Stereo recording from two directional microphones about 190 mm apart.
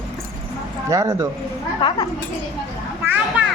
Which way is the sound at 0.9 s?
15° right (ahead or behind).